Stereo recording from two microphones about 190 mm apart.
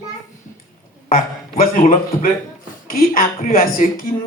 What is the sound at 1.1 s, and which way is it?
A man's voice, 45° left (ahead or behind).